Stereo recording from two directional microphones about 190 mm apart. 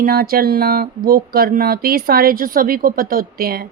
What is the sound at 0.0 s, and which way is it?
Speech, 50° right (ahead or behind).